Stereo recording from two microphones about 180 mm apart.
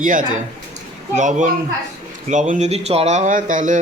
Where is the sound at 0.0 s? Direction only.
45° right (ahead or behind).